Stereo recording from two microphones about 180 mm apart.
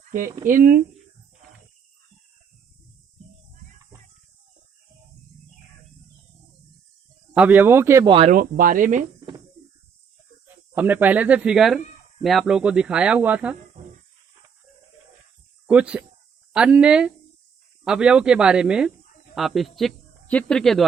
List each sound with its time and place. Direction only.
0.4 s speech: 50° right (ahead or behind)
7.3 s speech: 10° right (ahead or behind)
8.0 s speech: 30° right (ahead or behind)
8.3 s speech: 50° right (ahead or behind)
10.8 s speech: 10° right (ahead or behind)
15.6 s speech: 5° right (ahead or behind)